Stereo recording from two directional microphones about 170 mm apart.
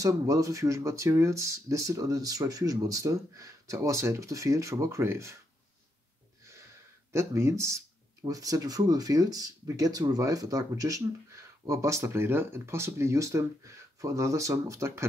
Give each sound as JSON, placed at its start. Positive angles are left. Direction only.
{"t": 0.0, "sound": "speech", "side_deg": -20}
{"t": 7.1, "sound": "speech", "side_deg": -15}